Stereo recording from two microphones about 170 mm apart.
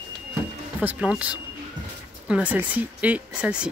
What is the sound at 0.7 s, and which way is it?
Speech, 5° right (ahead or behind).